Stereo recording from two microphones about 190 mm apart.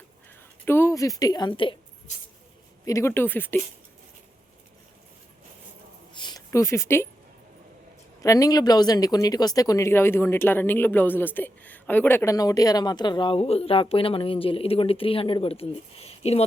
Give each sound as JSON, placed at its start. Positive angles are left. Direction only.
{"t": 0.6, "sound": "a woman's voice", "side_deg": 10}
{"t": 2.8, "sound": "speech", "side_deg": 15}
{"t": 6.1, "sound": "a sound", "side_deg": 20}
{"t": 8.2, "sound": "speech", "side_deg": 15}